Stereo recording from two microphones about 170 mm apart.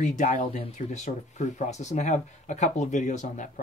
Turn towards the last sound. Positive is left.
turn(degrees=45)  # may be behind; listen again after turning